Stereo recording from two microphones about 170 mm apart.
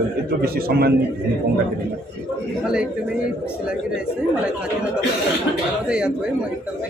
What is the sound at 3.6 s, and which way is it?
Speech, 5° right (ahead or behind).